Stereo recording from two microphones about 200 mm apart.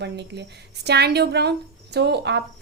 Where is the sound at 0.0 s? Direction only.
60° right (ahead or behind).